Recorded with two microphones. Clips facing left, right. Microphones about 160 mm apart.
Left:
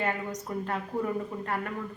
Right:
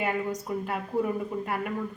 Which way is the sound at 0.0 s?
10° right (ahead or behind).